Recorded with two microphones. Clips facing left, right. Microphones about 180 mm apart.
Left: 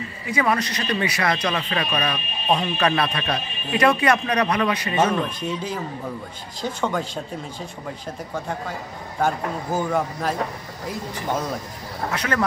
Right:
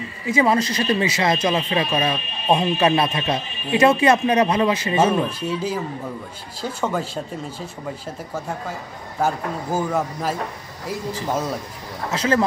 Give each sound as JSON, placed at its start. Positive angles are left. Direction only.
{"t": 0.3, "sound": "speech", "side_deg": -25}
{"t": 5.4, "sound": "speech", "side_deg": -5}
{"t": 9.2, "sound": "a man's voice", "side_deg": -5}
{"t": 12.1, "sound": "speech", "side_deg": -25}